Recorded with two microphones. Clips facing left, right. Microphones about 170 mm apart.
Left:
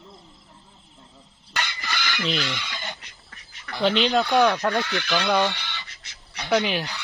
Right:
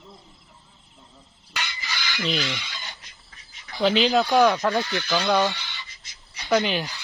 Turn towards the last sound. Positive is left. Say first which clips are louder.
# even
turn(degrees=0)  # may be behind; listen again after turning